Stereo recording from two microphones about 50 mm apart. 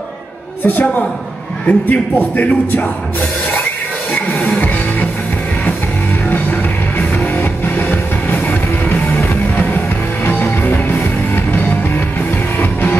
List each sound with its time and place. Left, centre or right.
0.7 s a man's voice: left
4.1 s music: left
7.0 s music: left